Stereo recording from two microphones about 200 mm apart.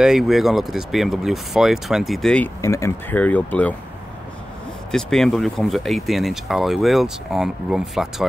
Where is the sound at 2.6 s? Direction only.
15° left (ahead or behind).